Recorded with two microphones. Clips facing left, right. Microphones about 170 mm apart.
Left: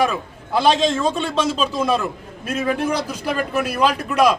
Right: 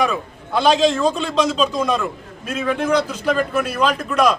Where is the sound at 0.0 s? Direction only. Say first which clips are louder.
Even; 5° left (ahead or behind).